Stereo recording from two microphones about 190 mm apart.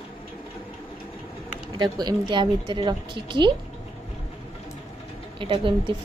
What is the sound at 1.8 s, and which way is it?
A woman's voice, 20° right (ahead or behind).